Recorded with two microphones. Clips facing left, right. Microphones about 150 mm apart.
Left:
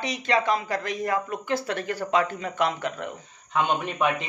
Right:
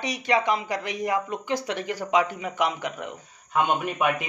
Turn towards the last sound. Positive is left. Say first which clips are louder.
# even
turn(degrees=-10)  # may be behind; listen again after turning